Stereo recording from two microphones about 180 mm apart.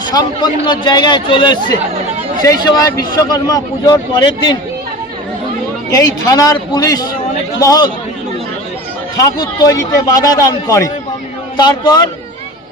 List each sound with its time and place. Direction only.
0.1 s a man's voice: 25° left (ahead or behind)
5.9 s a man's voice: 20° left (ahead or behind)
9.1 s a man's voice: 20° left (ahead or behind)